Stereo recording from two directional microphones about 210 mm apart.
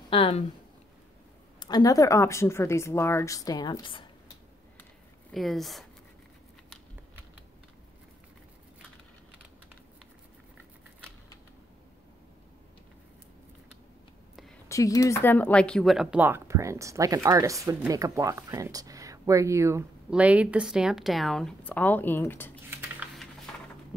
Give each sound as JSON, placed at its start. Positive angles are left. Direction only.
{"t": 0.1, "sound": "a sound", "side_deg": 25}
{"t": 1.6, "sound": "speech", "side_deg": 20}
{"t": 5.3, "sound": "speech", "side_deg": 0}
{"t": 14.7, "sound": "speech", "side_deg": 15}
{"t": 22.7, "sound": "typing", "side_deg": -10}